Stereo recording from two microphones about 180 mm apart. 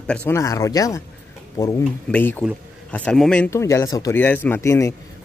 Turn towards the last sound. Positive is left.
turn(degrees=15)  # may be behind; listen again after turning